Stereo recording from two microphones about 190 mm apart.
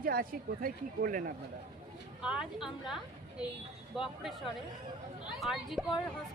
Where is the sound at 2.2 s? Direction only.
5° right (ahead or behind).